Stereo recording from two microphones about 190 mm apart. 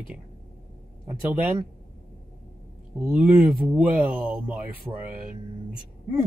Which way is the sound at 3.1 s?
5° right (ahead or behind).